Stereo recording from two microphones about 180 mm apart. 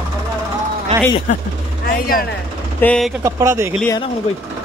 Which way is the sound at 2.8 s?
5° left (ahead or behind).